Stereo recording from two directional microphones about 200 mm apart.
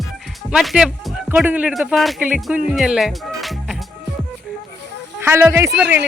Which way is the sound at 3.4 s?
Centre (ahead or behind).